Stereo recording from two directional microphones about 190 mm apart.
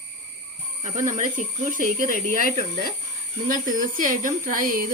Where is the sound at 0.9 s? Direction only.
40° right (ahead or behind).